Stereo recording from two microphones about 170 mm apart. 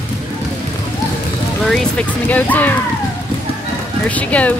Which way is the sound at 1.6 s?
Centre (ahead or behind).